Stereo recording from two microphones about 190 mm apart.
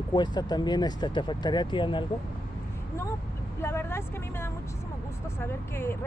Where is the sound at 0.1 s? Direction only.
20° left (ahead or behind).